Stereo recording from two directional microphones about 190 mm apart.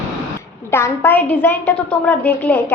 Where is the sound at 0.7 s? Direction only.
10° left (ahead or behind).